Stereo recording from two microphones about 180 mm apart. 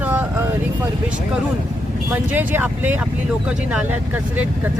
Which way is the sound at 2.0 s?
10° right (ahead or behind).